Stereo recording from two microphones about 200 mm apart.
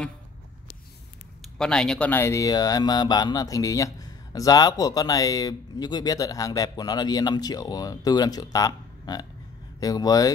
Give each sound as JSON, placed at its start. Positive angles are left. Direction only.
{"t": 1.4, "sound": "speech", "side_deg": 5}